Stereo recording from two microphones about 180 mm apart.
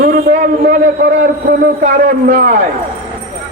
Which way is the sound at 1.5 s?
60° right (ahead or behind).